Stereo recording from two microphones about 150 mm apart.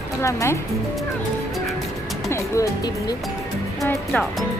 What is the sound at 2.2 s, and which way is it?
Speech, 20° left (ahead or behind).